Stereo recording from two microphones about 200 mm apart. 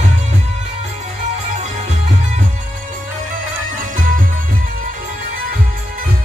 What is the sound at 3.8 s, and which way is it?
Music, 40° right (ahead or behind).